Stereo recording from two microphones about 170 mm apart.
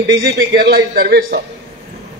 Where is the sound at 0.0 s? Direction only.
70° right (ahead or behind).